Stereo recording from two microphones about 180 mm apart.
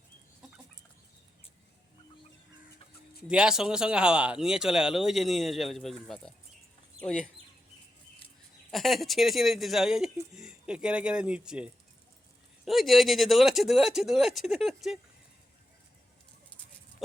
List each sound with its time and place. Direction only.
3.2 s speech: 5° right (ahead or behind)
8.7 s speech: centre (ahead or behind)